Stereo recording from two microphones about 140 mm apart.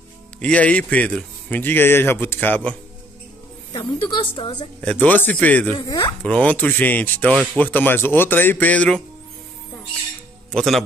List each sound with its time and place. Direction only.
0.4 s speech: 10° left (ahead or behind)
3.7 s a woman's voice: 35° left (ahead or behind)
4.8 s speech: 10° left (ahead or behind)
5.8 s speech: 30° left (ahead or behind)
6.2 s speech: 10° left (ahead or behind)
10.5 s speech: centre (ahead or behind)